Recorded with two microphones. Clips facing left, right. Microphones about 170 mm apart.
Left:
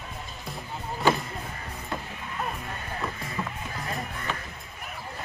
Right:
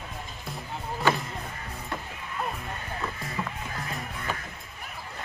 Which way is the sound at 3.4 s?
5° right (ahead or behind).